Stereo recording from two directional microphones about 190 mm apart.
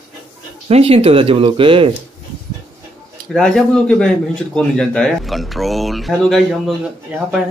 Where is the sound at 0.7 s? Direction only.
30° right (ahead or behind).